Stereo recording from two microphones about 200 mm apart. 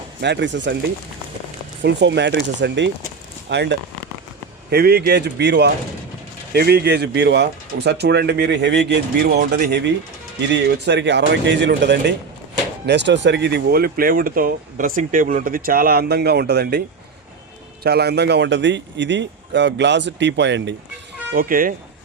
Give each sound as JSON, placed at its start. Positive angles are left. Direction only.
{"t": 0.2, "sound": "speech", "side_deg": -60}
{"t": 1.8, "sound": "speech", "side_deg": -60}
{"t": 17.8, "sound": "speech", "side_deg": -55}
{"t": 21.3, "sound": "speech", "side_deg": -45}